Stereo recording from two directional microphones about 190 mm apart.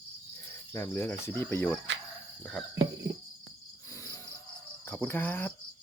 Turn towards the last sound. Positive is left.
turn(degrees=10)  # may be behind; listen again after turning